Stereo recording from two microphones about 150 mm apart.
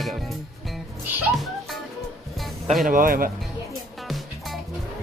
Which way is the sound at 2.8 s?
65° right (ahead or behind).